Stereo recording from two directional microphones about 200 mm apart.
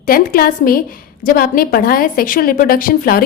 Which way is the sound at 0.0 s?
45° left (ahead or behind).